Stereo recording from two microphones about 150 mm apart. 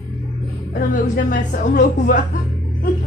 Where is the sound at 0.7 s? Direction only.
60° left (ahead or behind).